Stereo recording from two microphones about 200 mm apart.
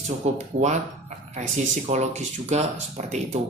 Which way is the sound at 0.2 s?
35° right (ahead or behind).